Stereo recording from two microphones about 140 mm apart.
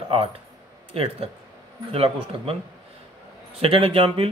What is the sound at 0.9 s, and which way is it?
Speech, 40° right (ahead or behind).